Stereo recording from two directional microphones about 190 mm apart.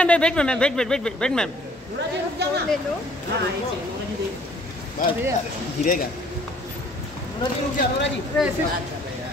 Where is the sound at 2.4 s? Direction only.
60° right (ahead or behind).